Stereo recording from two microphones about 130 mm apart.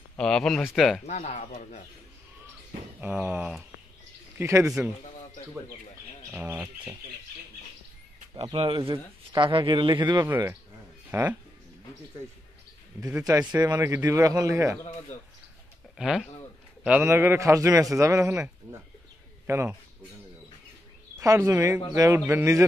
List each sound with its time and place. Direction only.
0.2 s speech: 5° left (ahead or behind)
1.0 s speech: 60° left (ahead or behind)
3.0 s a man's voice: 10° right (ahead or behind)
6.3 s speech: 15° right (ahead or behind)
8.5 s speech: 40° right (ahead or behind)
10.2 s speech: 15° right (ahead or behind)
13.0 s a man's voice: 25° right (ahead or behind)
16.0 s a man's voice: 5° right (ahead or behind); by 19.8 s 20° right (ahead or behind)
21.2 s a man's voice: 25° right (ahead or behind)